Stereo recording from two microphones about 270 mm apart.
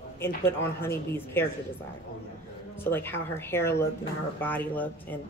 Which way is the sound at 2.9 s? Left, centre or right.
Centre.